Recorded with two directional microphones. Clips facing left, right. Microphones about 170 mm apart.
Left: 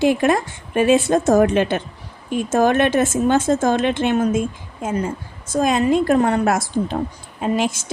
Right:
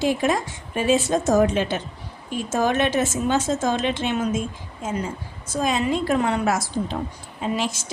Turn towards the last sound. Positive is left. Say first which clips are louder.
# left 5 dB
turn(degrees=50)  # may be behind; listen again after turning